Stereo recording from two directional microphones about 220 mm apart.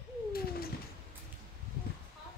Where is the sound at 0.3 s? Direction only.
45° left (ahead or behind).